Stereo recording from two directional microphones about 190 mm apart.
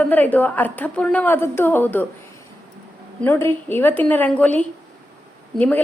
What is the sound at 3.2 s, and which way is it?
A woman's voice, 10° left (ahead or behind).